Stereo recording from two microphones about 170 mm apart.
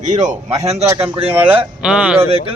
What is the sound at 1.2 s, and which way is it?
Speech, 35° right (ahead or behind).